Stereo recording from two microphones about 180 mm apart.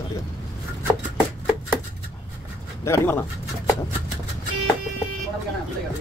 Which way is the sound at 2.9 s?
15° left (ahead or behind).